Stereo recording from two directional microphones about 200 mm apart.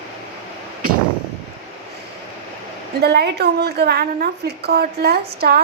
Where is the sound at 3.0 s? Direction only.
55° right (ahead or behind).